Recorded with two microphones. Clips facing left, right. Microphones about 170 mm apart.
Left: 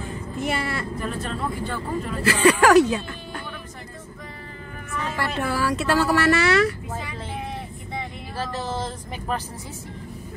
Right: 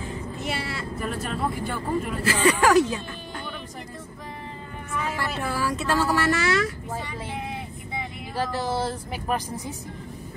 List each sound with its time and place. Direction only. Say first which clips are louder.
0.5 s vehicle: left 4 dB; 50° left (ahead or behind)
0.9 s speech: even; 5° right (ahead or behind)
2.2 s speech: left 4 dB; 70° left (ahead or behind)
5.2 s speech: left 6 dB; 65° left (ahead or behind)
7.9 s speech: even; 10° right (ahead or behind)